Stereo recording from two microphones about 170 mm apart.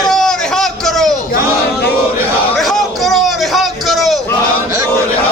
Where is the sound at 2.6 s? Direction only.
Centre (ahead or behind).